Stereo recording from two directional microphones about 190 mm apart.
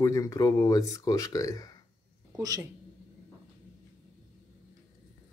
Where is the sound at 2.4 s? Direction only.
20° right (ahead or behind).